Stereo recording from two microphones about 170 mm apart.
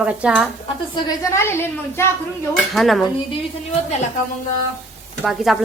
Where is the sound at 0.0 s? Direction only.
5° right (ahead or behind).